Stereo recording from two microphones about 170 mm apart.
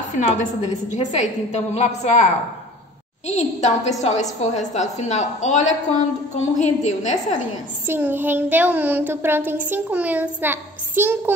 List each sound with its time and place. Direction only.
0.1 s a woman's voice: 45° left (ahead or behind)
3.3 s a woman's voice: 40° left (ahead or behind)
7.8 s child singing: 10° right (ahead or behind)